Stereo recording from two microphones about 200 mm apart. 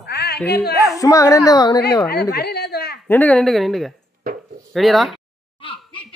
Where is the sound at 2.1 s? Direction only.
55° left (ahead or behind).